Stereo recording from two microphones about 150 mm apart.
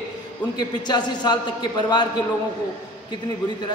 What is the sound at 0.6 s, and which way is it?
A man's voice, 30° left (ahead or behind).